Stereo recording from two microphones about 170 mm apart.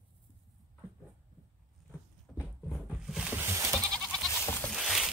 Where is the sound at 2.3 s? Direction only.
Centre (ahead or behind).